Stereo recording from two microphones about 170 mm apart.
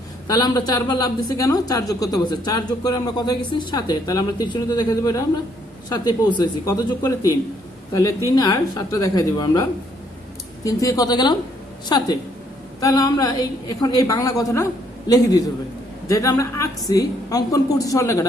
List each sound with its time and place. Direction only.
0.3 s a woman's voice: 20° left (ahead or behind)
8.4 s a woman's voice: 20° left (ahead or behind)